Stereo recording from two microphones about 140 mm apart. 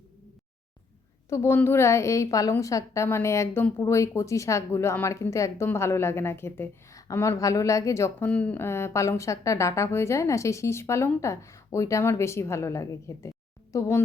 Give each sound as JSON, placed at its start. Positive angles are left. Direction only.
{"t": 1.3, "sound": "a woman's voice", "side_deg": 20}
{"t": 8.3, "sound": "a woman's voice", "side_deg": 10}